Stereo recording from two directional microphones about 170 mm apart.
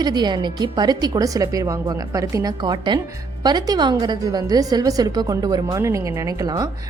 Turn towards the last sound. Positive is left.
turn(degrees=-20)  # may be behind; listen again after turning